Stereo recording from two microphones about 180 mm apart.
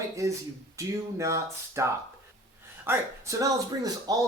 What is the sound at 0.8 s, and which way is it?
A man's voice, 15° right (ahead or behind).